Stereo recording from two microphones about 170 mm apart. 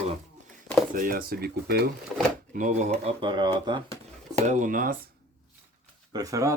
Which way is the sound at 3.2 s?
25° right (ahead or behind).